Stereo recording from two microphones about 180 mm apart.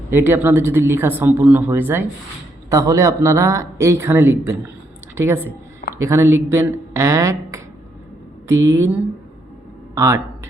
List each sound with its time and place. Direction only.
0.1 s speech: 10° right (ahead or behind)